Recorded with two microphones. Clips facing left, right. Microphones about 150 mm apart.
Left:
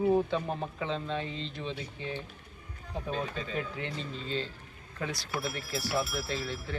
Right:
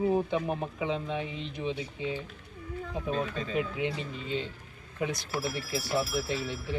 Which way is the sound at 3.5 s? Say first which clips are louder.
Right 5 dB; 10° right (ahead or behind).